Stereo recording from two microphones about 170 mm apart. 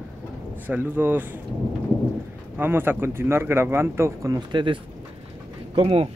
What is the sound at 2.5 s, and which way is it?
Speech, 10° right (ahead or behind).